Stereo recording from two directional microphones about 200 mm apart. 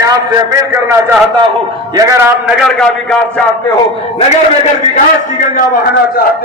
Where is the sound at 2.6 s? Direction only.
5° left (ahead or behind).